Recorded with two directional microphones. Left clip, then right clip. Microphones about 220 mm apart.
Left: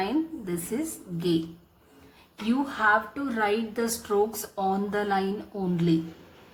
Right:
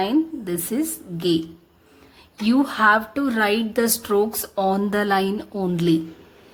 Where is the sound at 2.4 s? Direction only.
40° right (ahead or behind).